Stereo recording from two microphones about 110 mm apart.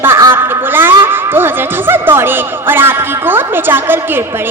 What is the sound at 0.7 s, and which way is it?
Speech, 20° right (ahead or behind).